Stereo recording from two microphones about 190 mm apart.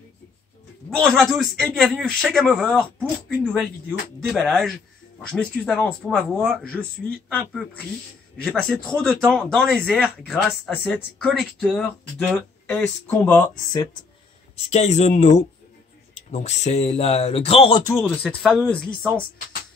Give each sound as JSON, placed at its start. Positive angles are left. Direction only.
{"t": 0.8, "sound": "speech", "side_deg": 5}
{"t": 4.3, "sound": "speech", "side_deg": 0}
{"t": 14.7, "sound": "speech", "side_deg": 35}
{"t": 18.0, "sound": "speech", "side_deg": 5}